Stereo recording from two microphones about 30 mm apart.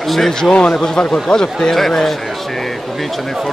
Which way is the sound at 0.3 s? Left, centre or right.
Left.